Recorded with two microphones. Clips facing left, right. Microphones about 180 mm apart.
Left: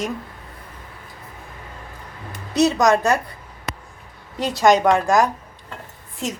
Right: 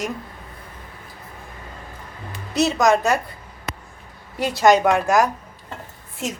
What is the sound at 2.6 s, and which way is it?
Speech, centre (ahead or behind).